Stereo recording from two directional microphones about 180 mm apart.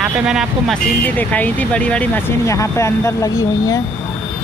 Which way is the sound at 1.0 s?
10° left (ahead or behind).